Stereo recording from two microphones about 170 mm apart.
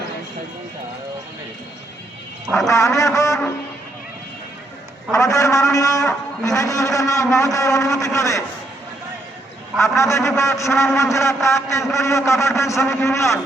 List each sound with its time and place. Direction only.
2.6 s a man's voice: 20° left (ahead or behind)
5.1 s a man's voice: 20° left (ahead or behind)
9.8 s a man's voice: 15° left (ahead or behind)